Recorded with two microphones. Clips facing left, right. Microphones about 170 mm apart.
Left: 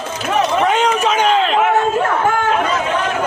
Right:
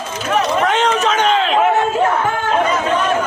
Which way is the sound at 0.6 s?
10° left (ahead or behind).